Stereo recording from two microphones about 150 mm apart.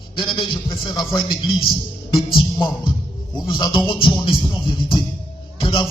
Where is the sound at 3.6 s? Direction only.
30° left (ahead or behind).